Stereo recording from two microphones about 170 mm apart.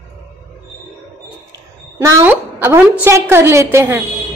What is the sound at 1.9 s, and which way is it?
A woman's voice, 15° right (ahead or behind).